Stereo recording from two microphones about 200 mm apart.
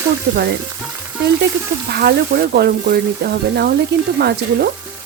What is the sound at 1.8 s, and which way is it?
Speech, 55° right (ahead or behind).